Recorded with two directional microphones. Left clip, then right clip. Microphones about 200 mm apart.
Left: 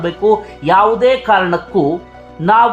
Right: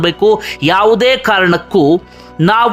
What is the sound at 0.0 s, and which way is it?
Speech, 35° right (ahead or behind).